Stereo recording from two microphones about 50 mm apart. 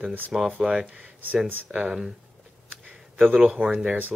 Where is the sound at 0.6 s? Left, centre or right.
Centre.